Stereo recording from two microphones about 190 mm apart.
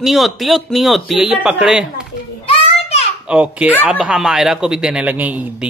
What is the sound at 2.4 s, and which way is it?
Children playing, 30° left (ahead or behind).